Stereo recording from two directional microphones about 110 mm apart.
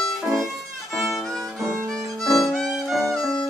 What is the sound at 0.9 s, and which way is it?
Violin, centre (ahead or behind).